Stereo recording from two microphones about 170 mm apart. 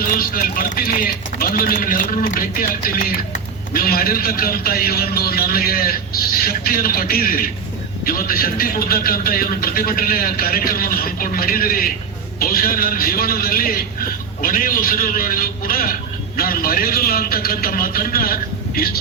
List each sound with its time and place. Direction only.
0.1 s speech: 55° left (ahead or behind)